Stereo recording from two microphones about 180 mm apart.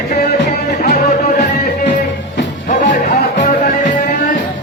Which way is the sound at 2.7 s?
45° left (ahead or behind).